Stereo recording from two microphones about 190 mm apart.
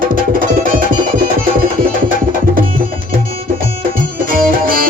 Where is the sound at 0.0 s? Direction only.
45° right (ahead or behind).